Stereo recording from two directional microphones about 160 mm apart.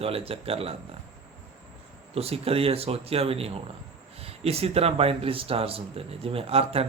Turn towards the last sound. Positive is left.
turn(degrees=-40)  # may be behind; listen again after turning